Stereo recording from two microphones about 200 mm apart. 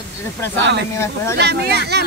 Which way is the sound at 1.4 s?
55° right (ahead or behind).